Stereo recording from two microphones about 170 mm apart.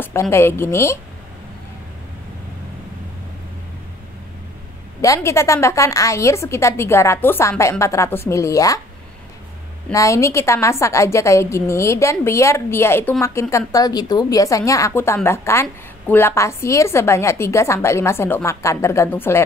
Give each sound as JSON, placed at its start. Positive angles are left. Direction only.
{"t": 0.0, "sound": "a woman's voice", "side_deg": 15}
{"t": 5.0, "sound": "a woman's voice", "side_deg": 20}
{"t": 9.9, "sound": "a woman's voice", "side_deg": 15}